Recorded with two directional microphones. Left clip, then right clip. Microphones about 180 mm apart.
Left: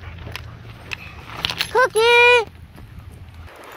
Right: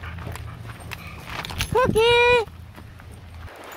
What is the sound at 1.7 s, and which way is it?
Speech, 5° left (ahead or behind).